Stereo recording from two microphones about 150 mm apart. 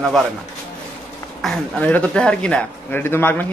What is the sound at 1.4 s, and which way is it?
Speech, 5° left (ahead or behind).